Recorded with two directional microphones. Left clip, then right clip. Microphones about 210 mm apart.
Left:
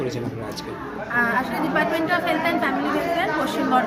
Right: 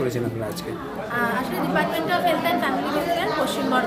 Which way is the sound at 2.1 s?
5° right (ahead or behind).